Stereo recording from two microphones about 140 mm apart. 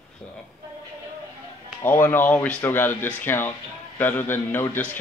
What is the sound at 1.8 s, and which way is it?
Speech, 15° left (ahead or behind).